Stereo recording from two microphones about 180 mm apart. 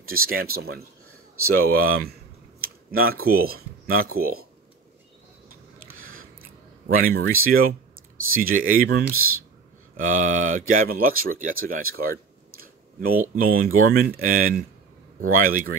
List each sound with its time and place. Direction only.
0.0 s speech: 55° right (ahead or behind)
6.9 s speech: 55° right (ahead or behind)